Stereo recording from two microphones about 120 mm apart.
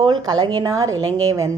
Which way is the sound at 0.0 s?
35° right (ahead or behind).